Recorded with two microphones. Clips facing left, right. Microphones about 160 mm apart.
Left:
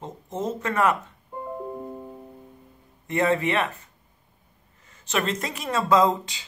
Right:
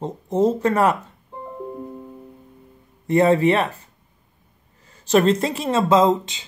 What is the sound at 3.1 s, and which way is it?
Speech, 35° right (ahead or behind).